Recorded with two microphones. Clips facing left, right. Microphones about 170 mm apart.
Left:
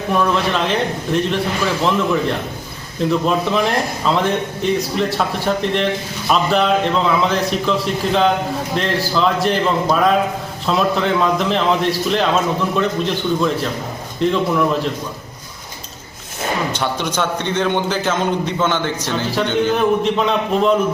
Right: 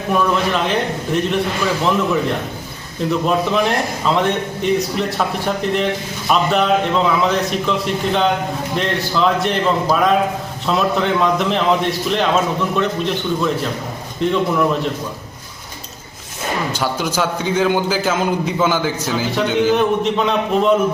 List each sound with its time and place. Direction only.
0.1 s a man's voice: centre (ahead or behind)
3.1 s a man's voice: centre (ahead or behind)
16.7 s a man's voice: 5° right (ahead or behind)